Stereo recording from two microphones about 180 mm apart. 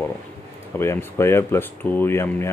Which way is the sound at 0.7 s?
15° left (ahead or behind).